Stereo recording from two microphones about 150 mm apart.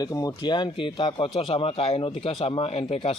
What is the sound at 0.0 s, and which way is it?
Speech, 25° left (ahead or behind).